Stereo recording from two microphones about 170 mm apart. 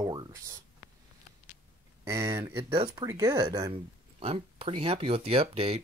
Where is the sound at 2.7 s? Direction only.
25° right (ahead or behind).